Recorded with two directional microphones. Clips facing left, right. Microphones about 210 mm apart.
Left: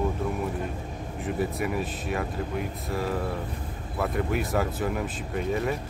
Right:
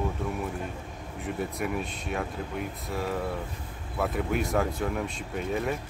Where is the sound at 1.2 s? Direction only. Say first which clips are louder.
Left 3 dB; centre (ahead or behind).